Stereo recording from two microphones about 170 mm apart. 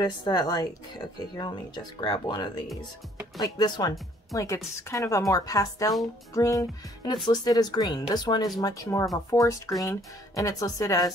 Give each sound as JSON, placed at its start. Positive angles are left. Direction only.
{"t": 0.0, "sound": "a woman's voice", "side_deg": 25}